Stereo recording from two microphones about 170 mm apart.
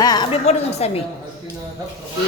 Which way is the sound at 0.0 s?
25° left (ahead or behind).